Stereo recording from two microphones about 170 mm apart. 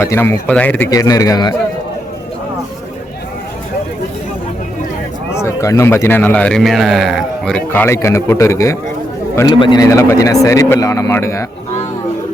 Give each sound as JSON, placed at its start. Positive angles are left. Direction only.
{"t": 0.0, "sound": "a man's voice", "side_deg": 15}
{"t": 0.9, "sound": "speech", "side_deg": 20}
{"t": 5.3, "sound": "a man's voice", "side_deg": 15}